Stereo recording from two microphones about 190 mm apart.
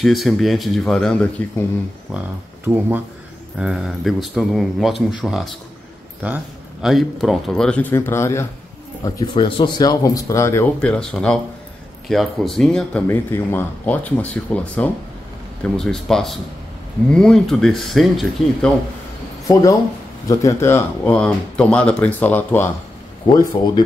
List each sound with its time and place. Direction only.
0.0 s a man's voice: centre (ahead or behind)
2.1 s a man's voice: 10° right (ahead or behind)
19.4 s speech: 15° left (ahead or behind)
23.2 s speech: 25° left (ahead or behind)